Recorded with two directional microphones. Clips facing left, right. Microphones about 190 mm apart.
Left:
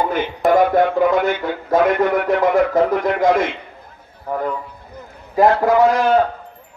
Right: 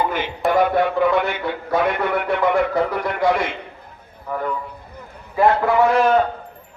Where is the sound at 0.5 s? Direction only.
45° left (ahead or behind).